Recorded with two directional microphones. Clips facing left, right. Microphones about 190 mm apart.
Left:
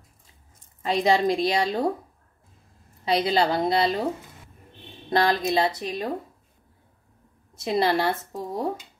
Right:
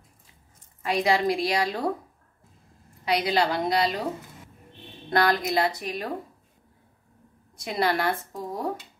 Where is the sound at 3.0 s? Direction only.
25° left (ahead or behind).